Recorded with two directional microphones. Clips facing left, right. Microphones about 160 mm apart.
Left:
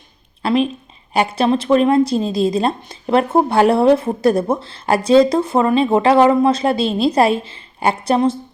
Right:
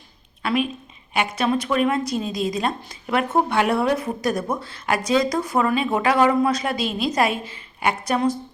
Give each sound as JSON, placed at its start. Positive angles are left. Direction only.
{"t": 0.4, "sound": "a woman's voice", "side_deg": 30}